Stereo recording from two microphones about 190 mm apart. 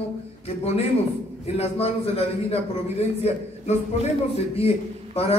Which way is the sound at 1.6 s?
30° left (ahead or behind).